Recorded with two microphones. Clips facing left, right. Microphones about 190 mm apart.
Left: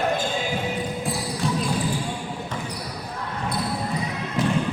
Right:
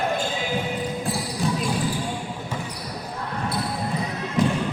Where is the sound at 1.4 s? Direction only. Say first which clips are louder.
Even; centre (ahead or behind).